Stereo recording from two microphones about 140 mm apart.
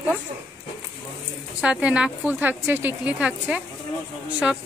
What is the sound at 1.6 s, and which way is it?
Speech, 5° right (ahead or behind).